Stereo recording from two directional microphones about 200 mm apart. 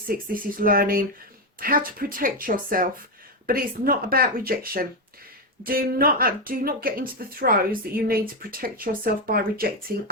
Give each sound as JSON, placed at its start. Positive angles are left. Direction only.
{"t": 0.5, "sound": "speech", "side_deg": -45}